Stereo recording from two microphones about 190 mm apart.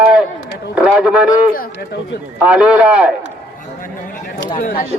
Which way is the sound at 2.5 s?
5° right (ahead or behind).